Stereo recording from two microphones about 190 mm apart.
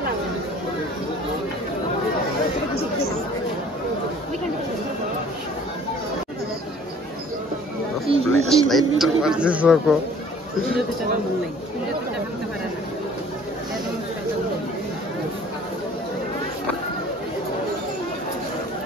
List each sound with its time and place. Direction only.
8.1 s speech: 30° right (ahead or behind)
8.5 s a man's voice: centre (ahead or behind)